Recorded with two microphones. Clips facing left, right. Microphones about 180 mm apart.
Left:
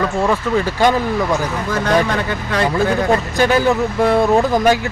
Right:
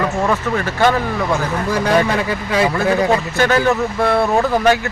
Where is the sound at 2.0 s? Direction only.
5° right (ahead or behind).